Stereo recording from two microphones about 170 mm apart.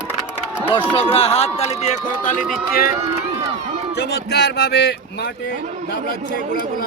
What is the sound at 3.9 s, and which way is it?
Speech, 80° left.